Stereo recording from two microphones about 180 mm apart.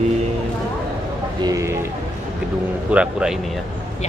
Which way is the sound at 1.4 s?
15° right (ahead or behind).